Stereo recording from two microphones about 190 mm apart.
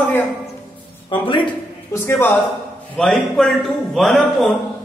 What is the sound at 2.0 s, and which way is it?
A man's voice, 10° left (ahead or behind).